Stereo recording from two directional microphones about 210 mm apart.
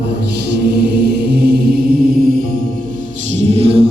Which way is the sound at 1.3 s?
50° right (ahead or behind).